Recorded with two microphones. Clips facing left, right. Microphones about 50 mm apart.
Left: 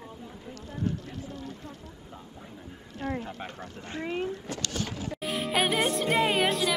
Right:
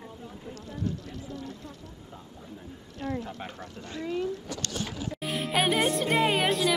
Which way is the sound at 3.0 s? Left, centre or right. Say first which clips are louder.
Even; left.